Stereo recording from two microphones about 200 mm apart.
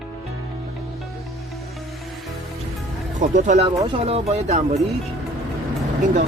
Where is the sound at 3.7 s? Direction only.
25° right (ahead or behind).